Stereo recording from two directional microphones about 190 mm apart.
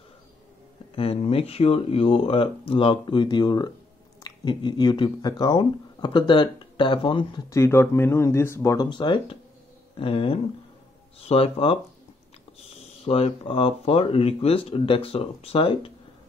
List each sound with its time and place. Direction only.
0.9 s speech: 30° left (ahead or behind)